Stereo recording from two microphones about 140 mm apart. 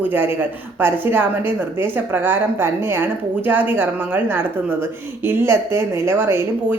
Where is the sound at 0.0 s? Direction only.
15° right (ahead or behind).